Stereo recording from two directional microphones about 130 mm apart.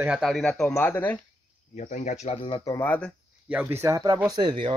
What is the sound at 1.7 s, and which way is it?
Speech, 70° left (ahead or behind).